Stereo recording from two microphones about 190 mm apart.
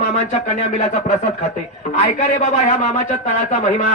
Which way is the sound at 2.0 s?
35° left (ahead or behind).